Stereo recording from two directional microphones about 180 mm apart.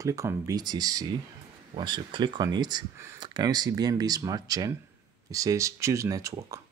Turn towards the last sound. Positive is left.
turn(degrees=-20)  # may be behind; listen again after turning